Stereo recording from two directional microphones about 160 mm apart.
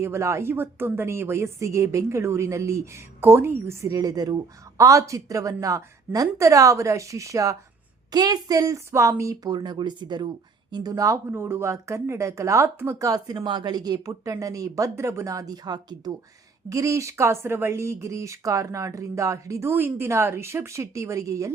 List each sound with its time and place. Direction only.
0.0 s speech: 15° right (ahead or behind)